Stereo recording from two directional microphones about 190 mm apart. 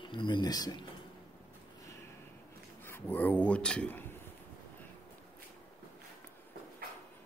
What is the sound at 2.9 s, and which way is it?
Speech, 10° left (ahead or behind).